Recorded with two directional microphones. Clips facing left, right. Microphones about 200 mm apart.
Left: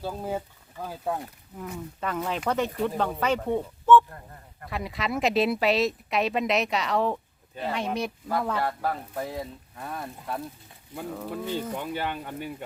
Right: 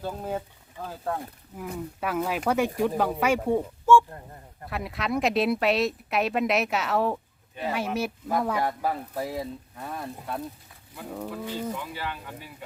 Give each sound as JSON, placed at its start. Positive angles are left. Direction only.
{"t": 0.0, "sound": "speech", "side_deg": 10}
{"t": 2.0, "sound": "speech", "side_deg": -5}
{"t": 11.9, "sound": "speech", "side_deg": 55}